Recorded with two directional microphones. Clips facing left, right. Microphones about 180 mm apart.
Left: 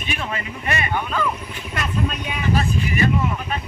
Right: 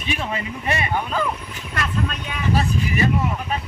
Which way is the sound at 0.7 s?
30° right (ahead or behind).